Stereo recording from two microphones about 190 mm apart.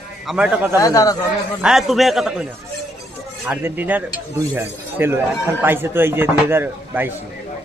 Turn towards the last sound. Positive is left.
turn(degrees=-10)  # may be behind; listen again after turning